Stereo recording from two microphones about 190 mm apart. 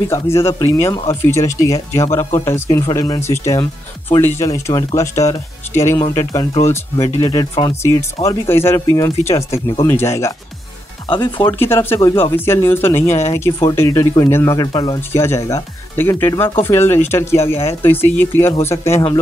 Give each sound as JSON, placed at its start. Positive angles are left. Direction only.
{"t": 0.1, "sound": "speech", "side_deg": 15}
{"t": 11.1, "sound": "speech", "side_deg": 25}
{"t": 11.4, "sound": "speech", "side_deg": 10}